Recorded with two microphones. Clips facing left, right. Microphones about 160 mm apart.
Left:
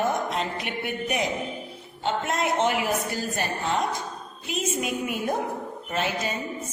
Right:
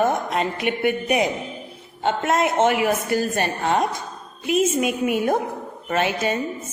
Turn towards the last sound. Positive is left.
turn(degrees=-70)  # may be behind; listen again after turning